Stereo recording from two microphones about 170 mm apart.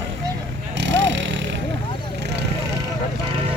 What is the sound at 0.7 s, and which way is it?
Vehicle, 90° right.